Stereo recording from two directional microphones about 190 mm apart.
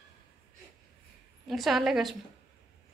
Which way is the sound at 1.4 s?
Centre (ahead or behind).